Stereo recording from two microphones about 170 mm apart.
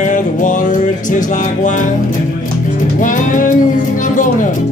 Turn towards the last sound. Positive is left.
turn(degrees=50)  # may be behind; listen again after turning